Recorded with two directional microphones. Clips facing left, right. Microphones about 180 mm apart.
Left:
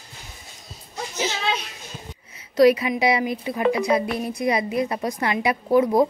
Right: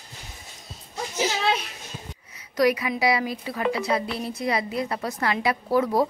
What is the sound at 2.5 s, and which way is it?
A woman's voice, 25° left (ahead or behind).